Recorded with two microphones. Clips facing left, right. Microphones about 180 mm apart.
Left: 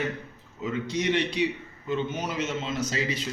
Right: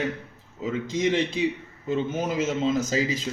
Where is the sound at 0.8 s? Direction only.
90° right.